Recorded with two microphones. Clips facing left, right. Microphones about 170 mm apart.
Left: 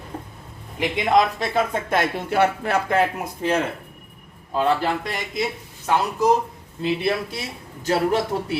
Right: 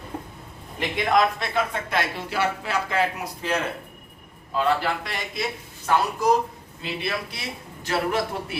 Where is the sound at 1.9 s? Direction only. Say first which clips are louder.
Left 6 dB; 50° left (ahead or behind).